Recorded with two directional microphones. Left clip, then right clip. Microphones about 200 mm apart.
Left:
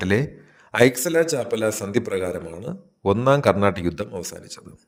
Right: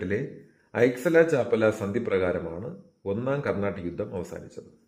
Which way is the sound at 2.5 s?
40° left (ahead or behind).